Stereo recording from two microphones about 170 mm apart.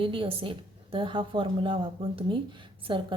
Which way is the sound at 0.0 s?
30° right (ahead or behind).